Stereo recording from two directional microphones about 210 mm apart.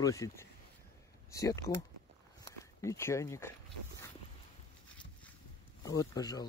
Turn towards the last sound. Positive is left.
turn(degrees=20)  # may be behind; listen again after turning